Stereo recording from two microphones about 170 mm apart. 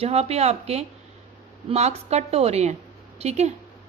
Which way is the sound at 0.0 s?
35° right (ahead or behind).